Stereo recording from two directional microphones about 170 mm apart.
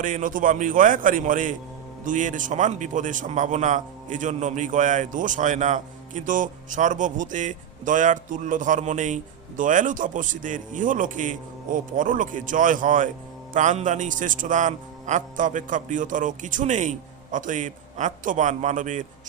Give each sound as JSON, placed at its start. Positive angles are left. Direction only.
{"t": 0.0, "sound": "a man's voice", "side_deg": -50}